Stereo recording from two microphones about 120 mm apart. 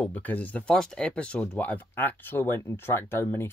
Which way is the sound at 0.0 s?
15° left (ahead or behind).